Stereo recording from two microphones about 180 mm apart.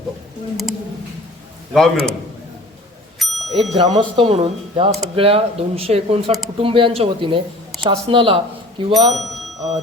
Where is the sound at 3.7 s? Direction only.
30° right (ahead or behind).